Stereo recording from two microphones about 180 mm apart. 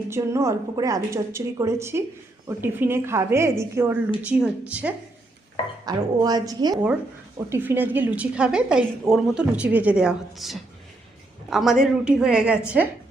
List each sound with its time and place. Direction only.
0.1 s a woman's voice: 15° right (ahead or behind)
5.8 s a woman's voice: 20° right (ahead or behind); by 12.9 s 5° right (ahead or behind)